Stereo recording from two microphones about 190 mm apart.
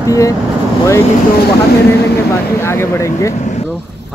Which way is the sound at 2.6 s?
15° left (ahead or behind).